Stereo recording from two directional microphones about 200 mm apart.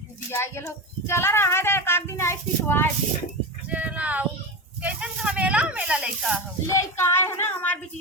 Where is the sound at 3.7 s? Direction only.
5° right (ahead or behind).